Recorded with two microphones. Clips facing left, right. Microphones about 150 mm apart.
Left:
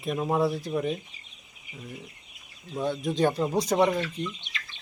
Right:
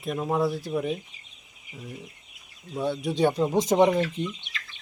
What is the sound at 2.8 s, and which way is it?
Speech, 10° right (ahead or behind).